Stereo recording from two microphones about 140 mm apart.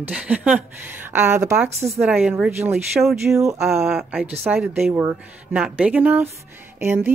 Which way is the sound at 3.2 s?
20° right (ahead or behind).